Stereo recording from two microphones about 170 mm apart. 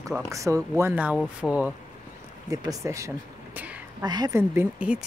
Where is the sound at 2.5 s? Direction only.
20° right (ahead or behind).